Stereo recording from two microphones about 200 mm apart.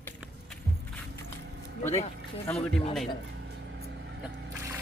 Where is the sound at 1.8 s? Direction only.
15° left (ahead or behind).